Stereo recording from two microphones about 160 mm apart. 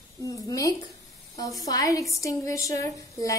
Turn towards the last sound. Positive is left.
turn(degrees=20)  # may be behind; listen again after turning